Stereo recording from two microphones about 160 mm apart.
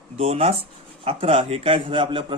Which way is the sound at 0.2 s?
40° right (ahead or behind).